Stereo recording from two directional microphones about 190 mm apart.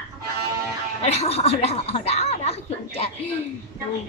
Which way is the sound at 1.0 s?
35° left (ahead or behind).